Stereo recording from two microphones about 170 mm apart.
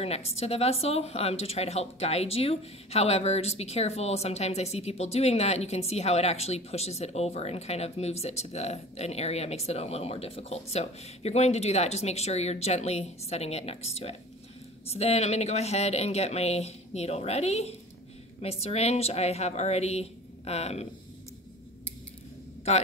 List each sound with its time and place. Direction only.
0.0 s speech: 35° left (ahead or behind)